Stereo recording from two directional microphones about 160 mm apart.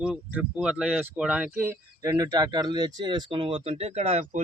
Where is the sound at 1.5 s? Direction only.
15° right (ahead or behind); by 4.4 s 45° right (ahead or behind).